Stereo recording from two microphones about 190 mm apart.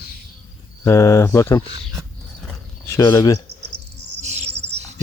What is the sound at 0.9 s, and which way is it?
Speech, 15° left (ahead or behind).